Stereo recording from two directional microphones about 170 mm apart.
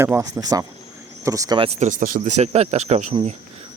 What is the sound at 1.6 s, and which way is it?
Speech, 45° right (ahead or behind).